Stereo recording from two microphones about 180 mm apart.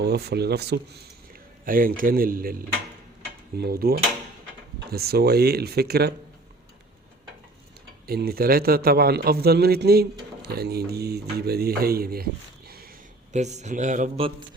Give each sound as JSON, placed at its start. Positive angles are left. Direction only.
{"t": 0.0, "sound": "a man's voice", "side_deg": -65}
{"t": 1.3, "sound": "a man's voice", "side_deg": -50}
{"t": 8.0, "sound": "a man's voice", "side_deg": -60}
{"t": 13.3, "sound": "speech", "side_deg": -40}
{"t": 14.2, "sound": "speech", "side_deg": -30}